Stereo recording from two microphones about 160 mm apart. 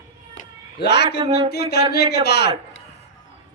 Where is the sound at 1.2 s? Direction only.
35° right (ahead or behind).